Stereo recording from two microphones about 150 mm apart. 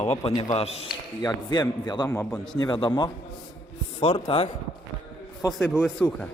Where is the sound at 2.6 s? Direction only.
30° left (ahead or behind).